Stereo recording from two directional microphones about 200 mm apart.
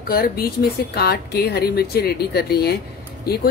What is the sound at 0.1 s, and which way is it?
A woman's voice, 50° left (ahead or behind).